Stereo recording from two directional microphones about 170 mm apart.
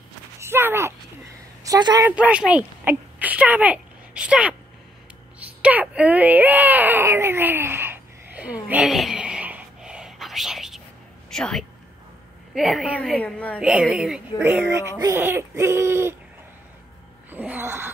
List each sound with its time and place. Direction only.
0.4 s a sound: 15° right (ahead or behind)
1.6 s a woman's voice: 20° right (ahead or behind)
2.0 s speech: 10° right (ahead or behind)
5.4 s baby cry: 10° right (ahead or behind)
11.2 s a woman's voice: 5° left (ahead or behind)
13.6 s a woman's voice: 5° right (ahead or behind)
17.3 s wail: 10° right (ahead or behind)